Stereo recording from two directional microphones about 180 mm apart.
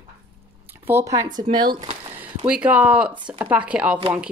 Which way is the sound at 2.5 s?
10° right (ahead or behind).